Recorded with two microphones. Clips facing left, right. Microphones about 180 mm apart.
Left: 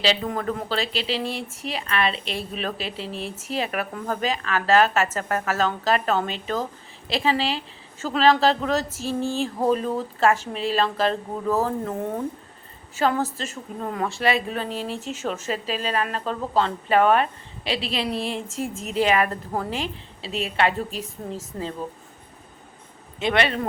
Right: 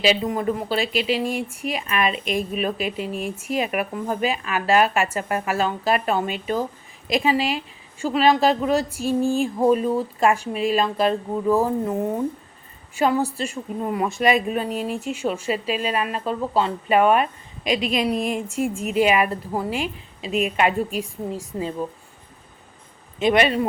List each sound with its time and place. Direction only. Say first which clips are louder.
0.0 s a woman's voice: right 3 dB; 10° right (ahead or behind)
23.2 s a woman's voice: right 4 dB; 15° right (ahead or behind)